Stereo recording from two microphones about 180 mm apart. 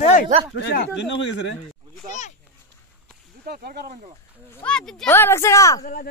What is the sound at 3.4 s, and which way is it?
Speech, 60° right (ahead or behind).